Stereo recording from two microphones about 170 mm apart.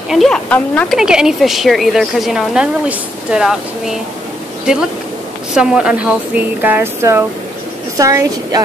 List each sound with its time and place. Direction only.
0.1 s a woman's voice: centre (ahead or behind)
5.5 s a woman's voice: 5° right (ahead or behind); by 8.6 s 20° right (ahead or behind)